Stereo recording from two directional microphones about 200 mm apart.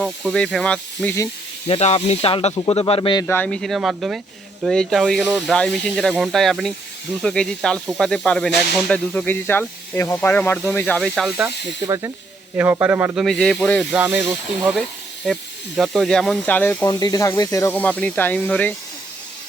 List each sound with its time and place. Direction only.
0.0 s speech: 5° left (ahead or behind)
1.6 s a man's voice: 30° left (ahead or behind); by 13.2 s 10° right (ahead or behind)
13.2 s speech: centre (ahead or behind)
13.9 s a man's voice: 10° right (ahead or behind); by 18.7 s 5° left (ahead or behind)